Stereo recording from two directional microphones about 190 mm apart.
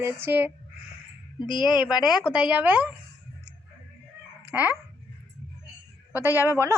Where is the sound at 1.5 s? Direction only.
25° left (ahead or behind).